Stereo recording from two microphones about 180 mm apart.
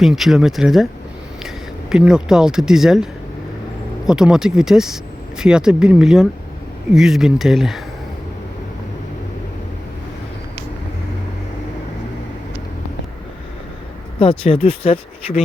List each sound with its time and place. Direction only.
0.0 s speech: centre (ahead or behind)
14.2 s speech: 30° left (ahead or behind)